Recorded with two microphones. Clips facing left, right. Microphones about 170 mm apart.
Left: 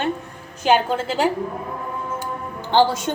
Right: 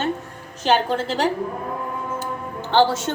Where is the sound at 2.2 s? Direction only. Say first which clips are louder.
Right 1 dB; 15° left (ahead or behind).